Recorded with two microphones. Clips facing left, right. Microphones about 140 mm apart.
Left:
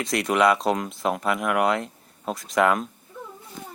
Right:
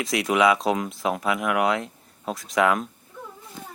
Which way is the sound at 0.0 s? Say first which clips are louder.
Even; centre (ahead or behind).